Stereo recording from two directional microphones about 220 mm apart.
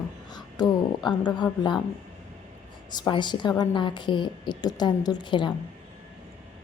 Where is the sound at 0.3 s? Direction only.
20° left (ahead or behind).